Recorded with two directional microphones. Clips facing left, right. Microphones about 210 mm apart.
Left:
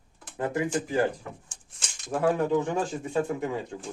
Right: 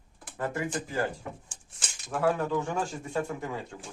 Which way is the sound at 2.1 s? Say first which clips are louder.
Left 3 dB; 20° left (ahead or behind).